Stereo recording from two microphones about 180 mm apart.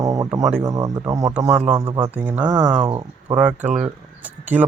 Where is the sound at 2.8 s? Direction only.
25° right (ahead or behind).